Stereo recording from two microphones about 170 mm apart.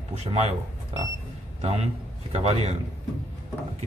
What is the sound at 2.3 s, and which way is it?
Speech, 40° right (ahead or behind).